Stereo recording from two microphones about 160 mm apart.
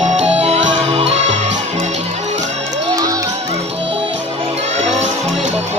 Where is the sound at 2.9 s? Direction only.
20° right (ahead or behind).